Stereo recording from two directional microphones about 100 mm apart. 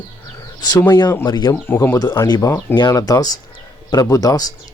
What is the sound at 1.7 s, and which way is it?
Speech, 25° left (ahead or behind).